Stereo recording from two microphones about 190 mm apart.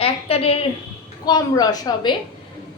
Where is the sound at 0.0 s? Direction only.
30° left (ahead or behind).